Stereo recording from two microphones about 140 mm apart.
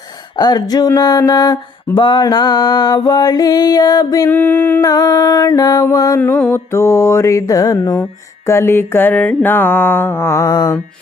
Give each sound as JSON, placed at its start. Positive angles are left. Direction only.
{"t": 0.3, "sound": "mantra", "side_deg": 30}
{"t": 4.3, "sound": "mantra", "side_deg": 15}
{"t": 4.9, "sound": "mantra", "side_deg": 25}
{"t": 6.1, "sound": "mantra", "side_deg": 15}